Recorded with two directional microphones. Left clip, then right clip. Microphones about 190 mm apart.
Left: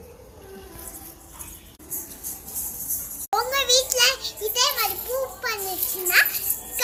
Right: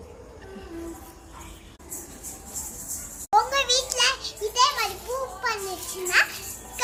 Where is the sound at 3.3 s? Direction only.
15° right (ahead or behind).